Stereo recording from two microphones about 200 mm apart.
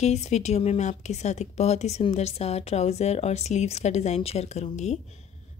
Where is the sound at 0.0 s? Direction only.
35° left (ahead or behind).